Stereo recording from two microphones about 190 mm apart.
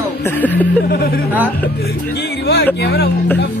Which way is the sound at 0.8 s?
55° left (ahead or behind).